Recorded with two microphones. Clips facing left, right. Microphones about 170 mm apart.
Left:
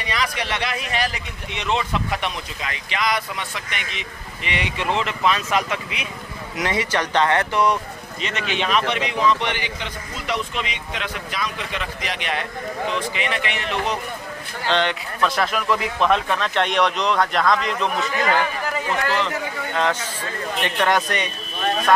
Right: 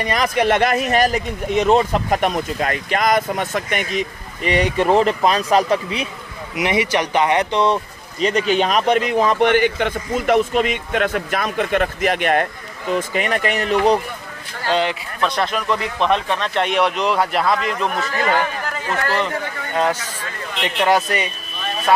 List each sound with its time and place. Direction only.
0.0 s speech: 50° right (ahead or behind)
6.5 s speech: 15° right (ahead or behind)
8.2 s speech: 40° right (ahead or behind)
14.7 s speech: 5° right (ahead or behind)
19.0 s speech: centre (ahead or behind)
19.7 s speech: 10° right (ahead or behind)